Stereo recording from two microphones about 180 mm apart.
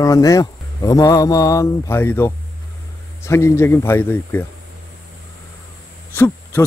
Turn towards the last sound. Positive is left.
turn(degrees=10)  # may be behind; listen again after turning